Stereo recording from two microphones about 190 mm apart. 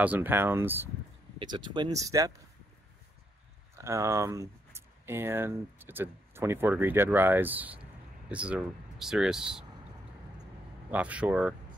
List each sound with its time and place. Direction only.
0.0 s speech: 10° right (ahead or behind)
1.4 s speech: 25° right (ahead or behind)
3.7 s speech: 15° right (ahead or behind)
10.9 s speech: 5° right (ahead or behind)